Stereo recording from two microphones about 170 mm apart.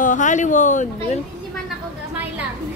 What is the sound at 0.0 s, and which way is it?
Speech, 50° left (ahead or behind).